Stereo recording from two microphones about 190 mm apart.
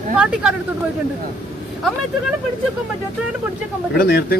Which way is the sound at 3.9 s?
55° left (ahead or behind).